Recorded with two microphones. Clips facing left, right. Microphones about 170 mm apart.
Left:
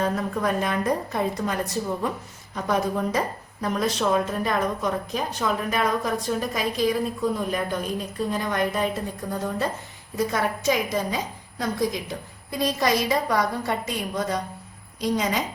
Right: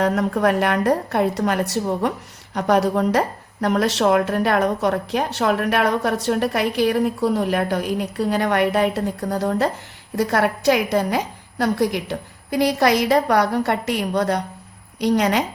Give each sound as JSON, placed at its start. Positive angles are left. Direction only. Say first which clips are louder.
{"t": 0.0, "sound": "a woman's voice", "louder": "right 6 dB", "side_deg": -80}